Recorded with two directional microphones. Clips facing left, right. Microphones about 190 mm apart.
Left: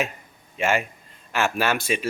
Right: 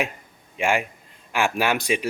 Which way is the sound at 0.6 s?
15° right (ahead or behind).